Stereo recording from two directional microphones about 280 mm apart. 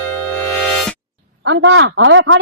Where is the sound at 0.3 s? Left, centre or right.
Centre.